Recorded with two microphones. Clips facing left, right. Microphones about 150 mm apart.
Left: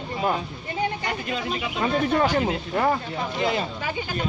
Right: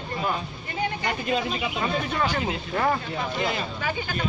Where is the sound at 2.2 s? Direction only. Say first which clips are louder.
Left 4 dB; 45° left (ahead or behind).